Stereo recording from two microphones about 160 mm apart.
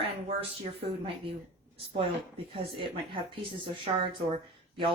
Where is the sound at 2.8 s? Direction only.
35° right (ahead or behind).